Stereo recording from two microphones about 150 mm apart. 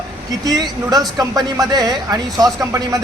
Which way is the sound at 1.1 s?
25° right (ahead or behind).